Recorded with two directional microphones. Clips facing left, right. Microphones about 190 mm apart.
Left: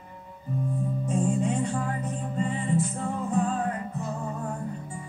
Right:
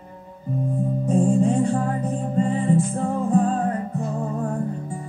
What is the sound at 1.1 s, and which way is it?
Music, 35° right (ahead or behind).